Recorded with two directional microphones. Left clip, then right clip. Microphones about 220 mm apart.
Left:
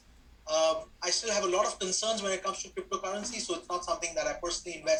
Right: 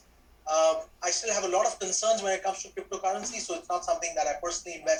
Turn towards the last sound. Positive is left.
turn(degrees=25)  # may be behind; listen again after turning